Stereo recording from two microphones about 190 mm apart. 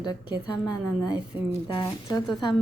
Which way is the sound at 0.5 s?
5° right (ahead or behind).